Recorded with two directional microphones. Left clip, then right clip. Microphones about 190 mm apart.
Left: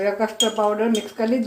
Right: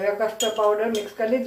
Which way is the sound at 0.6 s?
60° left (ahead or behind).